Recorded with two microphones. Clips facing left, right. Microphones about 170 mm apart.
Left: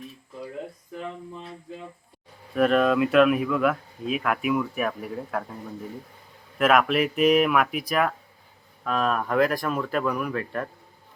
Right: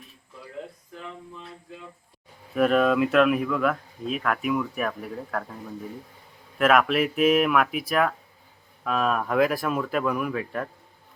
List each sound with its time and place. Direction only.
2.6 s speech: centre (ahead or behind)
6.6 s speech: centre (ahead or behind)